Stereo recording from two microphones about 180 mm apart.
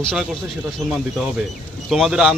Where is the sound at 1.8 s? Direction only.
Centre (ahead or behind).